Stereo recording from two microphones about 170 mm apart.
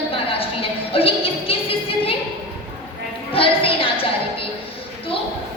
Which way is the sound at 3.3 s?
35° left (ahead or behind).